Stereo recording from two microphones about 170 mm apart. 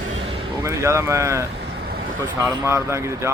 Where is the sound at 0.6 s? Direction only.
15° right (ahead or behind).